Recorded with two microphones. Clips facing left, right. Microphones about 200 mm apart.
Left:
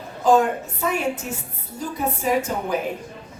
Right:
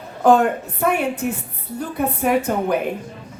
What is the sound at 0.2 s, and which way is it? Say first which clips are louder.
A woman's voice: right 3 dB; 60° right (ahead or behind).